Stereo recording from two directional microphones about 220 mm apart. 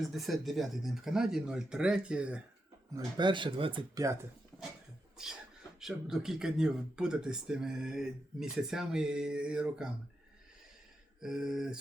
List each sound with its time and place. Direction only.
0.0 s speech: centre (ahead or behind)
2.9 s speech: 15° right (ahead or behind)
5.2 s speech: centre (ahead or behind)
11.2 s speech: centre (ahead or behind)